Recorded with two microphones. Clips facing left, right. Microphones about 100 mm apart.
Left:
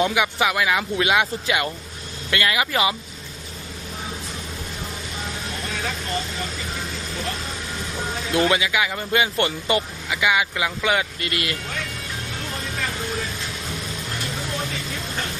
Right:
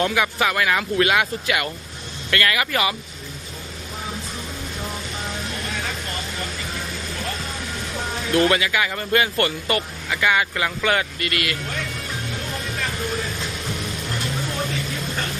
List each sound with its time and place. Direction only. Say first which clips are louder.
0.0 s speech: even; 15° left (ahead or behind)
8.3 s speech: right 2 dB; 15° left (ahead or behind)
11.2 s speech: right 2 dB; 25° left (ahead or behind)